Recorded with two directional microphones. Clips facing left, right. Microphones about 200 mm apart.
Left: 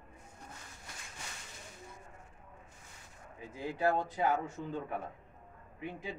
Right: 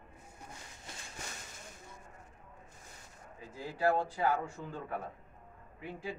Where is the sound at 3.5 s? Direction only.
20° left (ahead or behind).